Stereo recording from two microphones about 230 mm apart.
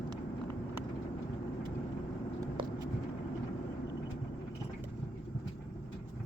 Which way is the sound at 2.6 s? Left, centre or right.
Right.